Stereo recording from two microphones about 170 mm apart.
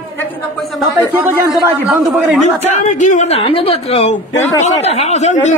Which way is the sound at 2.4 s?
45° left (ahead or behind).